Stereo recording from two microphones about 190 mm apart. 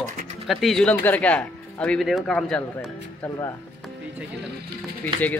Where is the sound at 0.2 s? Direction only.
35° right (ahead or behind).